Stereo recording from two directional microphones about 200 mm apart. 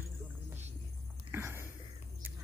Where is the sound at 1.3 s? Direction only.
10° right (ahead or behind).